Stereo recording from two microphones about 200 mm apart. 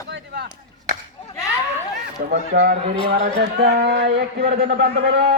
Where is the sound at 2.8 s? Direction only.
35° right (ahead or behind).